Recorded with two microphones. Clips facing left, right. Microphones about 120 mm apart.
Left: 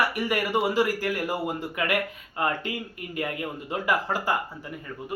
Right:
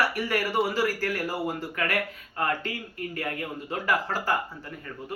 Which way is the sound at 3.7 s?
15° left (ahead or behind).